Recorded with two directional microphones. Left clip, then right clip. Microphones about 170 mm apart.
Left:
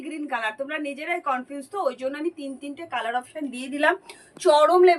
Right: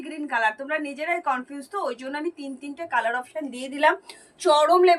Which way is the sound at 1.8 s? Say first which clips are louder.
Left 3 dB; 15° left (ahead or behind).